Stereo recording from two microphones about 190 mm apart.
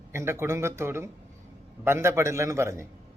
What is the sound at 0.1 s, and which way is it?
A man's voice, 15° right (ahead or behind).